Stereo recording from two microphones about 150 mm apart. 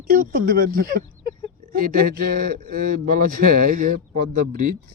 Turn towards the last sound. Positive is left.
turn(degrees=-60)  # may be behind; listen again after turning